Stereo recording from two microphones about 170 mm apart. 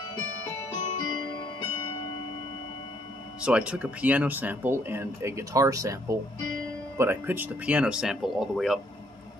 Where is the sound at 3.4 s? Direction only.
5° right (ahead or behind).